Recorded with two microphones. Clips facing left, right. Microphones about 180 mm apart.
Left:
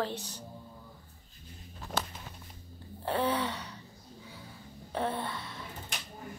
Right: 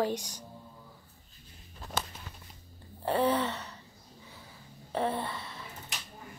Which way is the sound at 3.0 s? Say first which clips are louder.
Right 3 dB; 5° right (ahead or behind).